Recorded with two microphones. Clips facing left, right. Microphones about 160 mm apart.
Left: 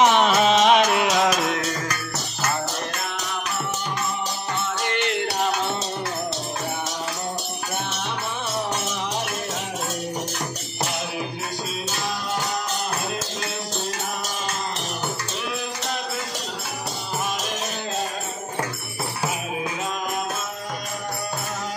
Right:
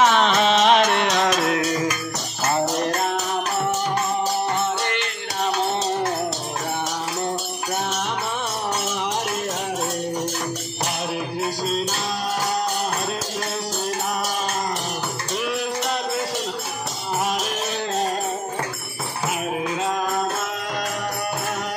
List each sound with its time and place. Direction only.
0.0 s music: 15° left (ahead or behind)
0.3 s music: centre (ahead or behind)
2.4 s music: 35° right (ahead or behind)